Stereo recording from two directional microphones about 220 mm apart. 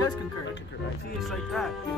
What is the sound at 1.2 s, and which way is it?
Speech, centre (ahead or behind).